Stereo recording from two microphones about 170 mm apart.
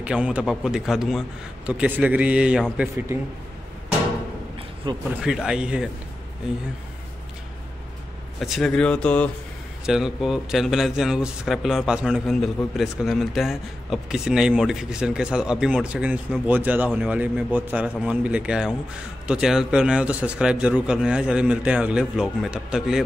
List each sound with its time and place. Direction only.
0.0 s a man's voice: 5° right (ahead or behind)
4.9 s speech: 25° right (ahead or behind)
5.2 s speech: 5° right (ahead or behind)
8.4 s a man's voice: centre (ahead or behind)